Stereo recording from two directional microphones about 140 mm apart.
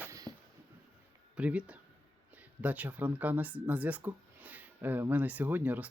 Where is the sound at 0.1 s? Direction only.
25° right (ahead or behind).